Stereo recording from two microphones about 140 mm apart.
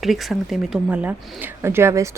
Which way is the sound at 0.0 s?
Centre (ahead or behind).